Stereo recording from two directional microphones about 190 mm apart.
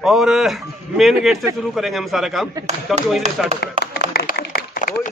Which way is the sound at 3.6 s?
55° left (ahead or behind).